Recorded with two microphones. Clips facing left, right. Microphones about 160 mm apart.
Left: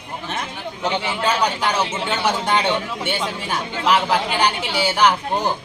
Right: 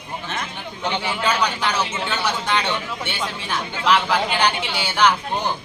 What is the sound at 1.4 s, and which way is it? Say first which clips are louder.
Speech: left 2 dB; 50° left (ahead or behind).